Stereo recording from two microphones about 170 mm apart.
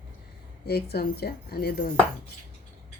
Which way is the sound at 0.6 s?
70° left (ahead or behind).